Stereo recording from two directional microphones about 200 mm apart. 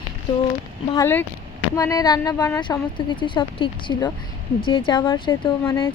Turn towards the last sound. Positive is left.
turn(degrees=20)  # may be behind; listen again after turning